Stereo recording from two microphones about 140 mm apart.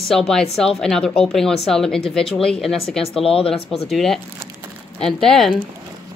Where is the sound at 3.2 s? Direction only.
40° left (ahead or behind).